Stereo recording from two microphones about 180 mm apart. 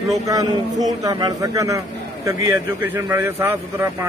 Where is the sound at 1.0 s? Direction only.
20° right (ahead or behind).